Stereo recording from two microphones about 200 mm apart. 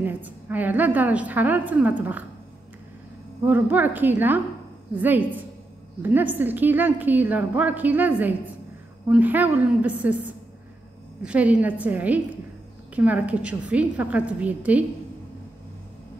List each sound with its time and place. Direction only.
0.0 s a woman's voice: 10° right (ahead or behind)
3.4 s a woman's voice: 10° right (ahead or behind)
11.2 s a woman's voice: 5° right (ahead or behind)